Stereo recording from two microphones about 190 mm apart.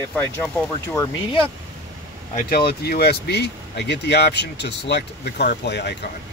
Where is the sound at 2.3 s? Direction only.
50° left (ahead or behind).